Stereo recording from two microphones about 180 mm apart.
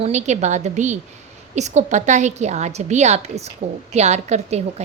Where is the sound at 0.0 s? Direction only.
40° right (ahead or behind).